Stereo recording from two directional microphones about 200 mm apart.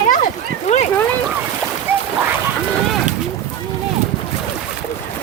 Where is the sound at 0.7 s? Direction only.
30° left (ahead or behind).